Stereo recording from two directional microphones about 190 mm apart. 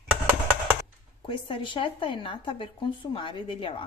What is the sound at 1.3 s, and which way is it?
Speech, 25° left (ahead or behind).